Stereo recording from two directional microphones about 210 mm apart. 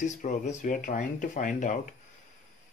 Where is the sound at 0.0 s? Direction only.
35° left (ahead or behind).